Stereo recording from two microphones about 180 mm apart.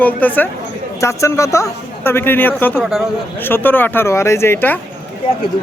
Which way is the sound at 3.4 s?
10° left (ahead or behind).